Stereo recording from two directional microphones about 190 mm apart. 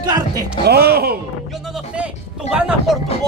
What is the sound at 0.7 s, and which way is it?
Speech, 55° right (ahead or behind).